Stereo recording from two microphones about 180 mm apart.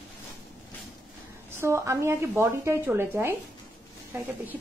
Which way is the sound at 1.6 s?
15° right (ahead or behind).